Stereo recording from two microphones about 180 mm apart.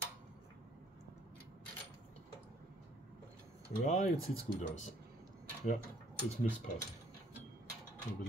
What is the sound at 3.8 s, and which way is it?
Speech, 40° left (ahead or behind).